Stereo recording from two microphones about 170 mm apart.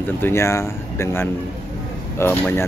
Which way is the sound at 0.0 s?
15° left (ahead or behind).